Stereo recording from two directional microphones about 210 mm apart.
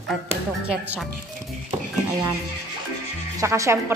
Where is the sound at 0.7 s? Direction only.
5° right (ahead or behind).